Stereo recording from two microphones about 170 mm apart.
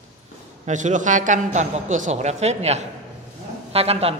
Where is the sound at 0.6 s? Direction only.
45° right (ahead or behind).